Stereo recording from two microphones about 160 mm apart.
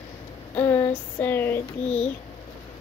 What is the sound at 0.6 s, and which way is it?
Speech, 10° left (ahead or behind).